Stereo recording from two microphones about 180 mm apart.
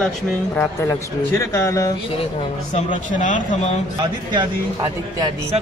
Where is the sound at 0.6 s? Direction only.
15° left (ahead or behind).